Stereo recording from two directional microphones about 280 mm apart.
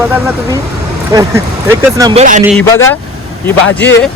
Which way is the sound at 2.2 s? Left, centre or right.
Right.